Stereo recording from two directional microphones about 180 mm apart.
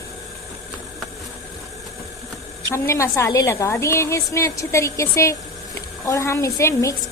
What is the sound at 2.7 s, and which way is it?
A woman's voice, 15° left (ahead or behind).